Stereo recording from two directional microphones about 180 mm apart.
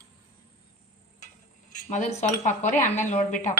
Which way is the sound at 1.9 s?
45° left (ahead or behind).